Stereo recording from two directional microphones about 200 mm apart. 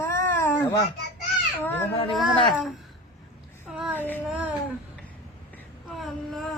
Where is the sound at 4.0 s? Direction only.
10° left (ahead or behind).